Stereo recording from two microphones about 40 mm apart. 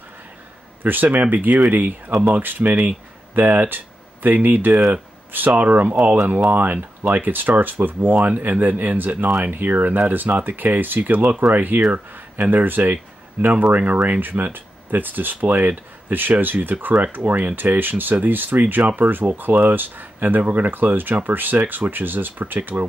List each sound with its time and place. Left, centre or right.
1.0 s speech: right
6.5 s speech: right